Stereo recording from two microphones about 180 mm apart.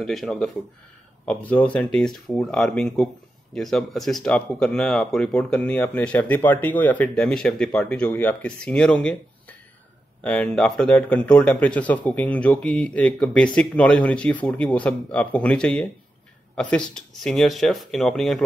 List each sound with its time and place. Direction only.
0.0 s speech: centre (ahead or behind)